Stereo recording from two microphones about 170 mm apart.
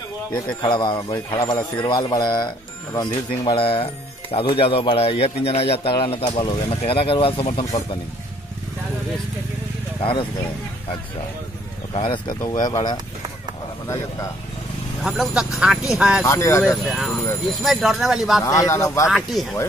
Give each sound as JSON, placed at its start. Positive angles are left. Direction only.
{"t": 0.6, "sound": "speech", "side_deg": 30}
{"t": 11.9, "sound": "speech", "side_deg": 30}
{"t": 15.0, "sound": "speech", "side_deg": -5}
{"t": 16.3, "sound": "a man's voice", "side_deg": 15}
{"t": 16.6, "sound": "speech", "side_deg": 0}
{"t": 18.4, "sound": "a man's voice", "side_deg": 15}
{"t": 19.0, "sound": "speech", "side_deg": -5}